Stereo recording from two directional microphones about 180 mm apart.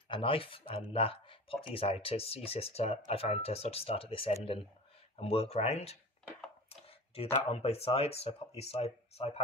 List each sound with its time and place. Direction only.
0.1 s speech: 30° left (ahead or behind)